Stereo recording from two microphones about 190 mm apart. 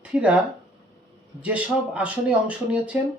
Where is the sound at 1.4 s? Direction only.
5° right (ahead or behind).